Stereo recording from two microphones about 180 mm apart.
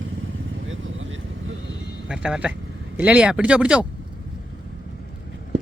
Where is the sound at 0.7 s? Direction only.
90° right.